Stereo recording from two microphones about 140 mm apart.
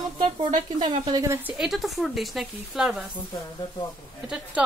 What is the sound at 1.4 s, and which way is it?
Speech, 5° right (ahead or behind).